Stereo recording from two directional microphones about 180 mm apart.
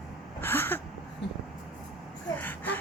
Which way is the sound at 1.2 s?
75° left (ahead or behind).